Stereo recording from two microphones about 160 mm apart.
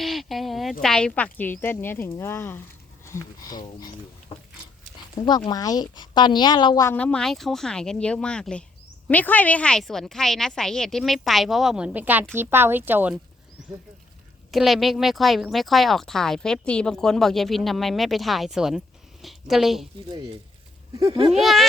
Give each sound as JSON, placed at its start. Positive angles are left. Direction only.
{"t": 0.0, "sound": "speech", "side_deg": 0}
{"t": 3.0, "sound": "a sound", "side_deg": 15}
{"t": 4.3, "sound": "a woman's voice", "side_deg": 35}
{"t": 6.9, "sound": "speech", "side_deg": 5}
{"t": 14.5, "sound": "a woman's voice", "side_deg": 0}
{"t": 21.0, "sound": "speech", "side_deg": -35}
{"t": 21.3, "sound": "speech", "side_deg": 0}